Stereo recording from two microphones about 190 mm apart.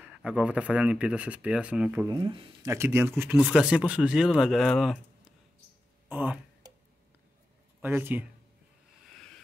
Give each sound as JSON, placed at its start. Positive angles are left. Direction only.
{"t": 0.0, "sound": "speech", "side_deg": -5}
{"t": 2.0, "sound": "speech", "side_deg": -25}
{"t": 2.7, "sound": "speech", "side_deg": -15}
{"t": 6.0, "sound": "speech", "side_deg": -10}
{"t": 7.8, "sound": "speech", "side_deg": -10}